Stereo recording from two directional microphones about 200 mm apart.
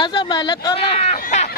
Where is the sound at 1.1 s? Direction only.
35° left (ahead or behind).